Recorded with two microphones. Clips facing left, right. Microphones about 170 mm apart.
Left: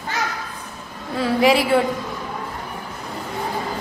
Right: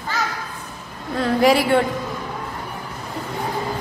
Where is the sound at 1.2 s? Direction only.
Centre (ahead or behind).